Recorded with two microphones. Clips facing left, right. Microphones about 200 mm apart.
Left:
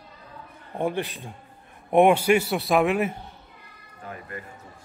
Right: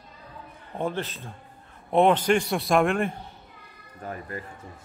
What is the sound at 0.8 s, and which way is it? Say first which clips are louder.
A man's voice: left 3 dB; 15° left (ahead or behind).